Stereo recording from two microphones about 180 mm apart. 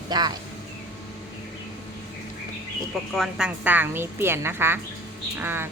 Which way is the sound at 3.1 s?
Centre (ahead or behind).